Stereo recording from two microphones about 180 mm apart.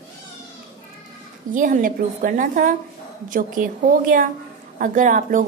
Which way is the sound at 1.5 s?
45° right (ahead or behind).